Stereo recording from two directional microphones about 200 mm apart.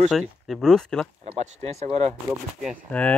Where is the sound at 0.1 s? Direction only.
Centre (ahead or behind).